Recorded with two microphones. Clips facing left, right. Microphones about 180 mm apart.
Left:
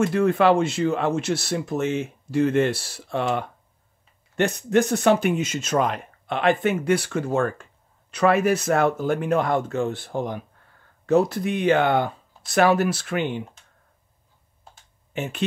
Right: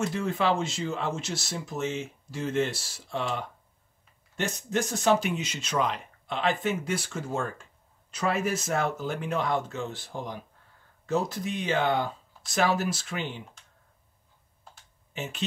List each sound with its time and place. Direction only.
0.0 s speech: 60° left (ahead or behind)
15.1 s speech: 55° left (ahead or behind)